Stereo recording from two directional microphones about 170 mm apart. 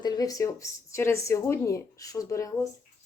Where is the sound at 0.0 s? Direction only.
20° left (ahead or behind).